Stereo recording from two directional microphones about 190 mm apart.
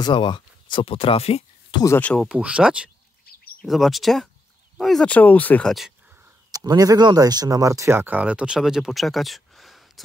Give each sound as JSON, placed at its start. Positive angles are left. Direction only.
{"t": 0.0, "sound": "speech", "side_deg": 25}
{"t": 1.8, "sound": "speech", "side_deg": 10}
{"t": 2.2, "sound": "speech", "side_deg": -5}
{"t": 3.3, "sound": "bird", "side_deg": 50}
{"t": 3.6, "sound": "speech", "side_deg": 0}
{"t": 6.5, "sound": "speech", "side_deg": -20}